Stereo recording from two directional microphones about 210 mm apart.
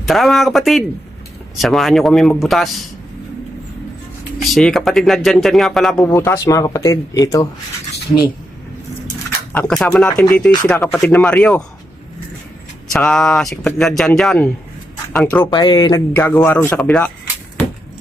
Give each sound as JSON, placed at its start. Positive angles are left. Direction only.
{"t": 0.1, "sound": "speech", "side_deg": 0}
{"t": 4.4, "sound": "speech", "side_deg": 0}
{"t": 6.0, "sound": "speech", "side_deg": 15}
{"t": 9.5, "sound": "speech", "side_deg": 5}
{"t": 12.9, "sound": "speech", "side_deg": 5}
{"t": 15.4, "sound": "speech", "side_deg": 20}